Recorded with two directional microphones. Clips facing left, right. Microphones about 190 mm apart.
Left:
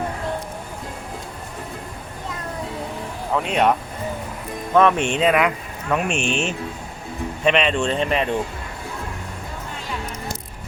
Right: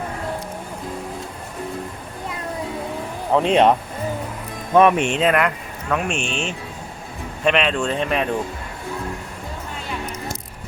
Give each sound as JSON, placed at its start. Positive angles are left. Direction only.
{"t": 3.3, "sound": "speech", "side_deg": -30}
{"t": 4.7, "sound": "speech", "side_deg": -15}
{"t": 5.0, "sound": "speech", "side_deg": 0}